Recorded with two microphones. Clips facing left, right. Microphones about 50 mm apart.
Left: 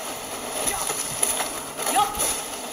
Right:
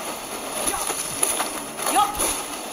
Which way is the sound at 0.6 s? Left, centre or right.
Centre.